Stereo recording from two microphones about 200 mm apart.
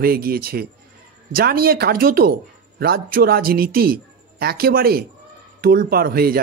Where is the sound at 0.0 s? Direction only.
50° right (ahead or behind).